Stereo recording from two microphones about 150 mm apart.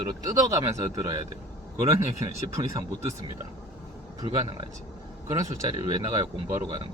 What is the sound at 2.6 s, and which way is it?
Speech, 25° right (ahead or behind).